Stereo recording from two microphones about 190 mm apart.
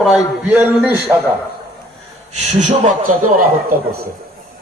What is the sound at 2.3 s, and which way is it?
A man's voice, 40° right (ahead or behind).